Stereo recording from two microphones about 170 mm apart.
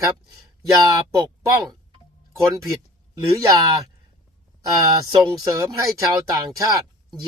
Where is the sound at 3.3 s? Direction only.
20° right (ahead or behind).